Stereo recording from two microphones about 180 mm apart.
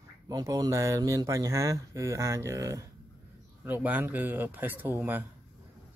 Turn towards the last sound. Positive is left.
turn(degrees=-10)  # may be behind; listen again after turning